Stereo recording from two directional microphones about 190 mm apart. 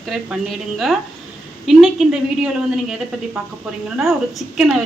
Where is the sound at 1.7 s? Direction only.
Centre (ahead or behind).